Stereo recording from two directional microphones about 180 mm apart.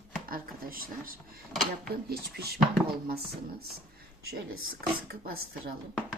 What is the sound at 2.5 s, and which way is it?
Speech, centre (ahead or behind).